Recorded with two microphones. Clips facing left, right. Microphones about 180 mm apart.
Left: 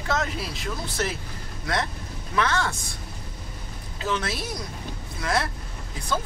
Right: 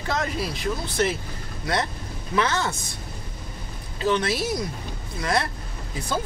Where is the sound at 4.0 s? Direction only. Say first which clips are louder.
Right 5 dB; centre (ahead or behind).